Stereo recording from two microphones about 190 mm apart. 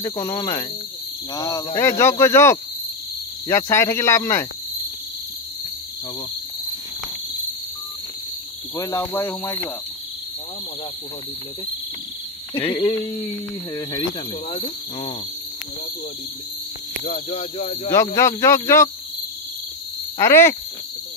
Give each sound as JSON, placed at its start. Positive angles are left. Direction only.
{"t": 0.0, "sound": "speech", "side_deg": 20}
{"t": 8.7, "sound": "speech", "side_deg": 15}
{"t": 12.5, "sound": "speech", "side_deg": 25}
{"t": 17.0, "sound": "speech", "side_deg": 40}
{"t": 17.8, "sound": "speech", "side_deg": 20}
{"t": 20.2, "sound": "speech", "side_deg": 15}